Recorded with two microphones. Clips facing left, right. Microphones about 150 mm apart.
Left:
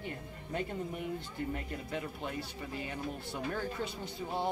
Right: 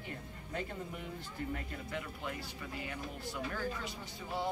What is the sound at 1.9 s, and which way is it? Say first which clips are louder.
Speech: left 2 dB; 25° left (ahead or behind).